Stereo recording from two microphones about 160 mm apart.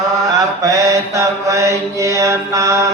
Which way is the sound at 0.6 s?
20° right (ahead or behind).